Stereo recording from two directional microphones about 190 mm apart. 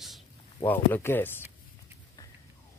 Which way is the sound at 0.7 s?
10° left (ahead or behind).